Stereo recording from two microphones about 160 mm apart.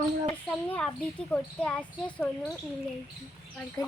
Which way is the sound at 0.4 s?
10° left (ahead or behind).